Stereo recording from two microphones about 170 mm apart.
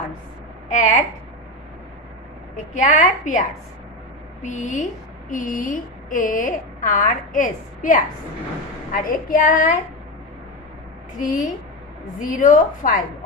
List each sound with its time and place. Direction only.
0.7 s a woman's voice: 50° left (ahead or behind)
2.5 s a woman's voice: 50° left (ahead or behind)
11.1 s a woman's voice: 50° left (ahead or behind)